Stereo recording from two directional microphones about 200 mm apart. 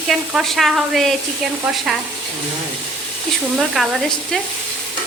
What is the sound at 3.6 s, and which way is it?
Frying, centre (ahead or behind).